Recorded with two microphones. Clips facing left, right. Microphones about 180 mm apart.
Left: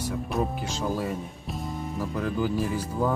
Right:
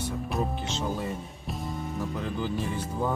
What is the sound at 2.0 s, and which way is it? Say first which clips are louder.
Speech: left 5 dB; 5° left (ahead or behind).